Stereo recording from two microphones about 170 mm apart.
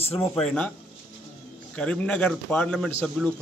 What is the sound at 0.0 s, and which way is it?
Speech, 35° left (ahead or behind).